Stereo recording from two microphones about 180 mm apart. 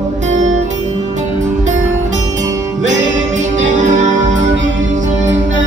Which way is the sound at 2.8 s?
40° right (ahead or behind).